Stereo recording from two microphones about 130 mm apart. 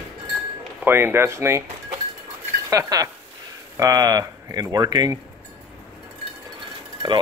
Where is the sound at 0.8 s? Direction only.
15° right (ahead or behind).